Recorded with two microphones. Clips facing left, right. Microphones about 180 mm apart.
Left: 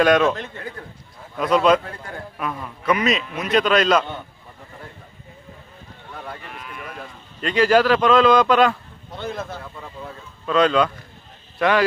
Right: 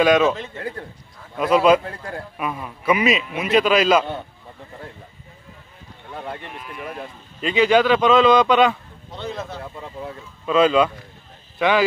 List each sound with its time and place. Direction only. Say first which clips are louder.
0.0 s a man's voice: even; 5° right (ahead or behind)
0.6 s a man's voice: right 4 dB; 30° right (ahead or behind)
1.4 s a man's voice: right 1 dB; 5° right (ahead or behind)
7.4 s a man's voice: even; centre (ahead or behind)